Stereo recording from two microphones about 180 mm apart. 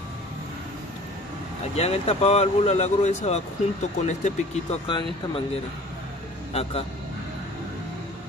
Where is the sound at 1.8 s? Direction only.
35° left (ahead or behind).